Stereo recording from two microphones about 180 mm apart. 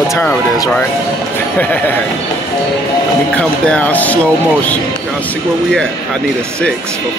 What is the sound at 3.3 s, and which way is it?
Speech, 5° left (ahead or behind).